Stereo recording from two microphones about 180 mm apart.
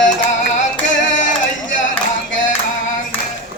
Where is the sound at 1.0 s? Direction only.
45° left (ahead or behind).